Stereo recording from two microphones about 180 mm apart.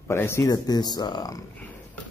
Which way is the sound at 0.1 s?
15° left (ahead or behind).